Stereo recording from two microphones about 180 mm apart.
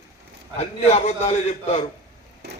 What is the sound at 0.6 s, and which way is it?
A man's voice, 35° left (ahead or behind).